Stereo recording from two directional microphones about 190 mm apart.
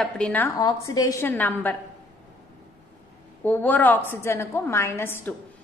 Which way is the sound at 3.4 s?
10° left (ahead or behind).